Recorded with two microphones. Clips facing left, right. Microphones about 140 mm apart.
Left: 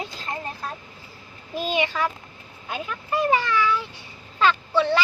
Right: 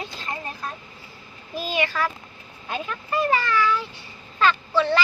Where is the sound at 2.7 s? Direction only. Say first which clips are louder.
Even; 5° left (ahead or behind).